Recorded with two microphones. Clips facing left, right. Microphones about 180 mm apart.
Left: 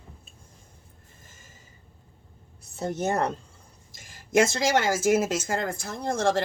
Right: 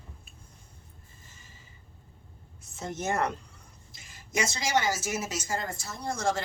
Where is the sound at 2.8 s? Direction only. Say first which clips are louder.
Left 4 dB; 35° left (ahead or behind).